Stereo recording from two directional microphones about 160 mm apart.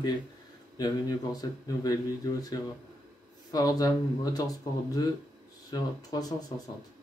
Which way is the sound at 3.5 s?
25° left (ahead or behind).